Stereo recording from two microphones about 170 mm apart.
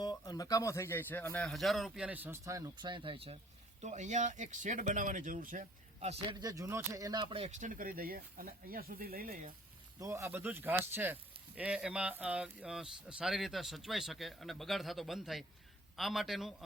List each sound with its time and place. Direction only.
0.0 s speech: 25° left (ahead or behind); by 3.3 s 35° right (ahead or behind)
3.8 s speech: 45° right (ahead or behind)
6.4 s speech: 20° right (ahead or behind); by 9.5 s 60° right (ahead or behind)
10.0 s speech: 15° right (ahead or behind); by 16.6 s centre (ahead or behind)